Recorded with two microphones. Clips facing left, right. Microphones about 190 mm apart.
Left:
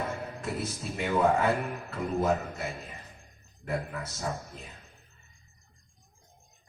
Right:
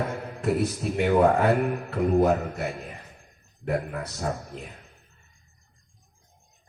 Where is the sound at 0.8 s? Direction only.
60° right (ahead or behind).